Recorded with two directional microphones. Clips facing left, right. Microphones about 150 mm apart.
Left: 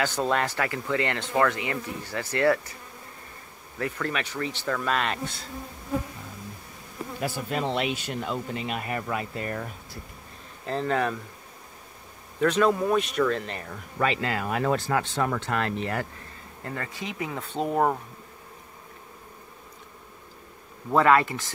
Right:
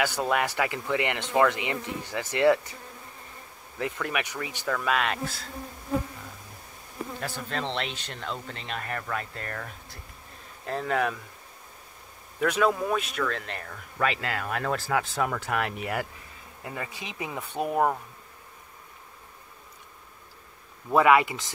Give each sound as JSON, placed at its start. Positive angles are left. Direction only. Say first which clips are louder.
{"t": 0.0, "sound": "speech", "louder": "left 1 dB", "side_deg": -10}
{"t": 3.7, "sound": "speech", "louder": "left 1 dB", "side_deg": -10}
{"t": 4.6, "sound": "speech", "louder": "right 1 dB", "side_deg": 0}
{"t": 7.2, "sound": "speech", "louder": "left 5 dB", "side_deg": 10}
{"t": 10.6, "sound": "speech", "louder": "left 1 dB", "side_deg": -5}
{"t": 12.4, "sound": "speech", "louder": "left 2 dB", "side_deg": -10}
{"t": 20.9, "sound": "speech", "louder": "even", "side_deg": -10}